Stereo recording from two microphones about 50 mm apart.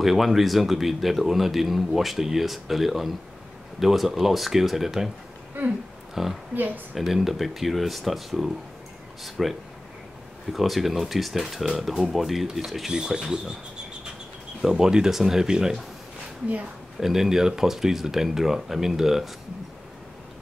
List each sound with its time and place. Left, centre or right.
0.0 s speech: centre
6.2 s speech: centre
6.5 s speech: right
7.0 s speech: centre
14.6 s speech: centre
17.0 s speech: centre